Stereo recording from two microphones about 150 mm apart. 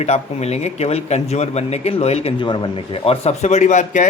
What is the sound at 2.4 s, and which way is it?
Speech, 30° left (ahead or behind).